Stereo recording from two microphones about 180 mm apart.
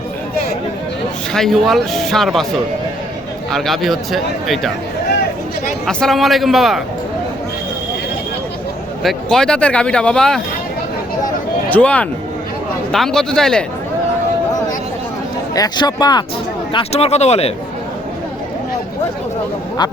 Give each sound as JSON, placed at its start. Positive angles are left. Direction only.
{"t": 1.3, "sound": "speech", "side_deg": 0}
{"t": 3.5, "sound": "speech", "side_deg": 0}
{"t": 5.8, "sound": "speech", "side_deg": 5}
{"t": 9.0, "sound": "speech", "side_deg": 5}
{"t": 11.7, "sound": "speech", "side_deg": 5}
{"t": 15.5, "sound": "speech", "side_deg": 20}
{"t": 16.7, "sound": "speech", "side_deg": 35}